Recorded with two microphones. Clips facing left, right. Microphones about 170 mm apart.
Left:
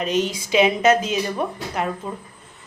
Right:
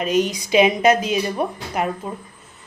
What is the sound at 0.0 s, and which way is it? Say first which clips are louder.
Speech: right 2 dB; 10° right (ahead or behind).